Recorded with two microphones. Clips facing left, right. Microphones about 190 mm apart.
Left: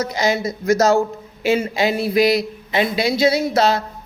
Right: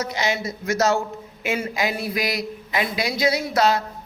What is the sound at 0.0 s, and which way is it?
A man's voice, 40° left (ahead or behind).